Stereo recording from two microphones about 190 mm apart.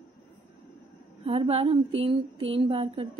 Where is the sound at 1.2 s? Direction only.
30° right (ahead or behind).